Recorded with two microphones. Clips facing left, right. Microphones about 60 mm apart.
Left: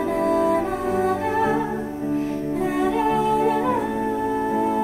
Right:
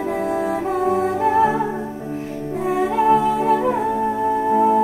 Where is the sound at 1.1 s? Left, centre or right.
Centre.